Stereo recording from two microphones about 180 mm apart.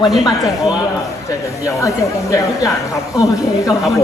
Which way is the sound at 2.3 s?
15° left (ahead or behind).